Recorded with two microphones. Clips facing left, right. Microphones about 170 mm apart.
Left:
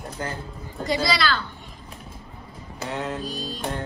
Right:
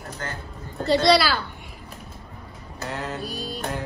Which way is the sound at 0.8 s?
10° left (ahead or behind).